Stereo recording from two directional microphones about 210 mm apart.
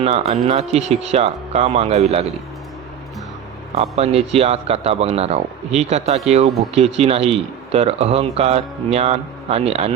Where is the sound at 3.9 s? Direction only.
30° right (ahead or behind).